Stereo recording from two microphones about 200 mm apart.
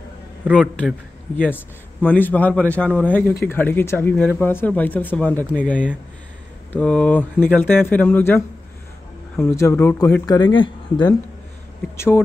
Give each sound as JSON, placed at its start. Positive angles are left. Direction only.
{"t": 0.5, "sound": "a man's voice", "side_deg": 5}